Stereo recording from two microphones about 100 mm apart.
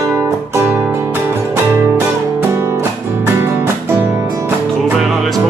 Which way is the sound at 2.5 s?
30° right (ahead or behind).